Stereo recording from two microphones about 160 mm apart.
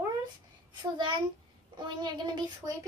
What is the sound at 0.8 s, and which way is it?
Speech, 30° right (ahead or behind).